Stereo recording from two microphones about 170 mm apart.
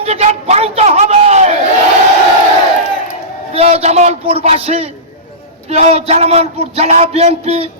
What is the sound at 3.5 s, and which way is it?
Speech, 40° right (ahead or behind).